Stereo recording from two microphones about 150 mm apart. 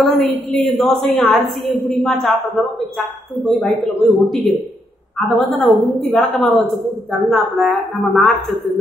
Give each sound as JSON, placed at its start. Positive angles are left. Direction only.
{"t": 0.0, "sound": "a woman's voice", "side_deg": 0}